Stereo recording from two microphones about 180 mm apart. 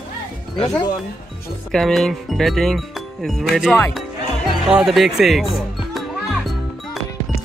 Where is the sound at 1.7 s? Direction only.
Centre (ahead or behind).